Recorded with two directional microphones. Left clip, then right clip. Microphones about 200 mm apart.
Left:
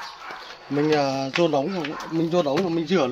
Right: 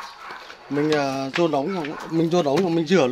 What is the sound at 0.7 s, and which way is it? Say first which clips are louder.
Speech: even; 10° right (ahead or behind).